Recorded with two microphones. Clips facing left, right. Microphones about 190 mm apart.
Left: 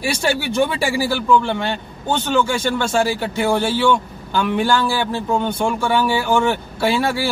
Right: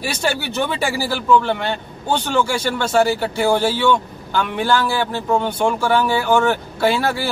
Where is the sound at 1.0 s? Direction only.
Centre (ahead or behind).